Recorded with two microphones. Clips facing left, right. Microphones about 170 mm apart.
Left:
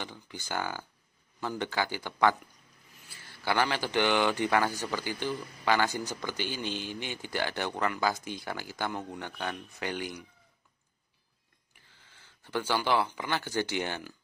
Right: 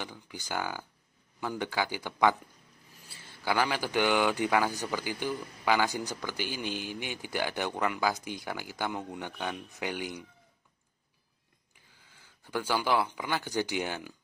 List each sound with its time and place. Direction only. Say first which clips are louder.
0.0 s a man's voice: even; 10° right (ahead or behind)
3.4 s a man's voice: even; 5° right (ahead or behind)
11.9 s speech: even; 10° right (ahead or behind)